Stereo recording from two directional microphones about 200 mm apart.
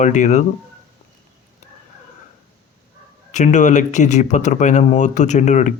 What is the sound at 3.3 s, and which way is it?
Speech, 35° left (ahead or behind).